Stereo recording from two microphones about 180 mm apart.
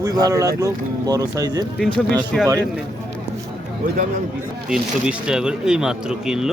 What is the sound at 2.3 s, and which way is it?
Speech, 5° left (ahead or behind).